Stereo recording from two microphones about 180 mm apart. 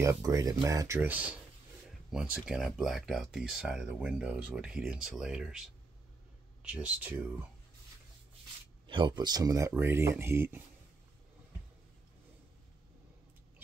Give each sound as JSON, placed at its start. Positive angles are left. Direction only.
{"t": 0.0, "sound": "speech", "side_deg": -15}
{"t": 8.8, "sound": "speech", "side_deg": -25}